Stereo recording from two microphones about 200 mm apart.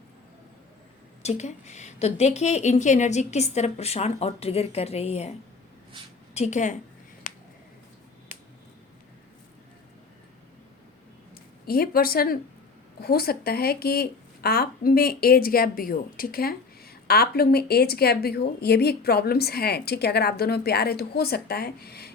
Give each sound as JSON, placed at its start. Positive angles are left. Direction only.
{"t": 1.2, "sound": "a woman's voice", "side_deg": 35}
{"t": 6.3, "sound": "a woman's voice", "side_deg": 35}
{"t": 7.3, "sound": "a sound", "side_deg": 40}
{"t": 11.6, "sound": "speech", "side_deg": 50}